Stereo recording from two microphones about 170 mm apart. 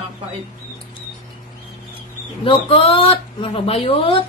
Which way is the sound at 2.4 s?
30° left (ahead or behind).